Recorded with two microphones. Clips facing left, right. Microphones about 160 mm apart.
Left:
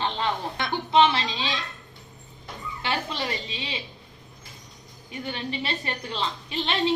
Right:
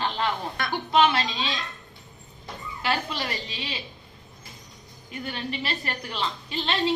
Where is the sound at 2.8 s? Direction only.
25° left (ahead or behind).